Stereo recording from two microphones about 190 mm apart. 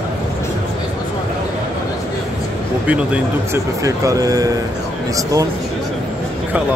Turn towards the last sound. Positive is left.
turn(degrees=-15)  # may be behind; listen again after turning